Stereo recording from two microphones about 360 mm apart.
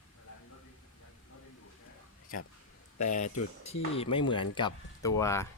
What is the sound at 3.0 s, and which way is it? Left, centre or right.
Speech, centre.